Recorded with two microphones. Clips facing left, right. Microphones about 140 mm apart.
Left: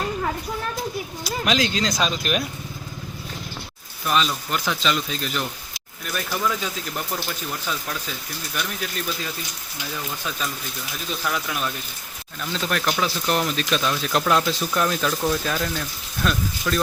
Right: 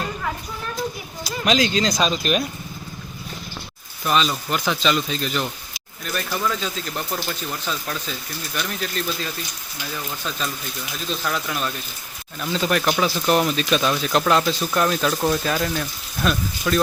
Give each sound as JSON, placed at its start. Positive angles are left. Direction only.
{"t": 1.2, "sound": "speech", "side_deg": 0}
{"t": 4.0, "sound": "speech", "side_deg": 0}
{"t": 11.1, "sound": "speech", "side_deg": 5}
{"t": 12.4, "sound": "speech", "side_deg": -5}